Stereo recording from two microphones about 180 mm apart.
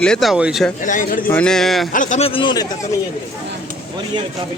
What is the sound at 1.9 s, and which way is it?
Speech, 45° left (ahead or behind).